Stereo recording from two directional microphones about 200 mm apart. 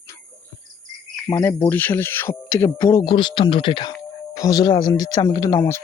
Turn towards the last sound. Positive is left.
turn(degrees=15)  # may be behind; listen again after turning